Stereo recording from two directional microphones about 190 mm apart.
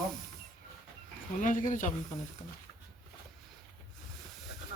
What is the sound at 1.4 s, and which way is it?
Speech, 45° left (ahead or behind).